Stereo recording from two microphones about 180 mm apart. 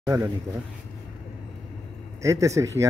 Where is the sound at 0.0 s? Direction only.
15° right (ahead or behind).